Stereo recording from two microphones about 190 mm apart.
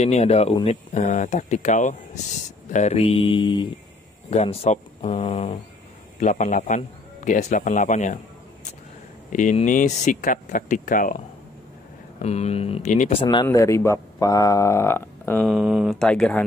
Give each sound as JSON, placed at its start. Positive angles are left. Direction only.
{"t": 0.0, "sound": "speech", "side_deg": 35}
{"t": 6.1, "sound": "speech", "side_deg": 40}
{"t": 9.3, "sound": "speech", "side_deg": 40}
{"t": 12.2, "sound": "speech", "side_deg": 35}
{"t": 15.4, "sound": "speech", "side_deg": 0}